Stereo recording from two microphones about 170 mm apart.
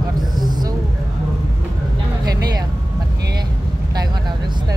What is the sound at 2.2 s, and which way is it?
Vehicle, 25° right (ahead or behind).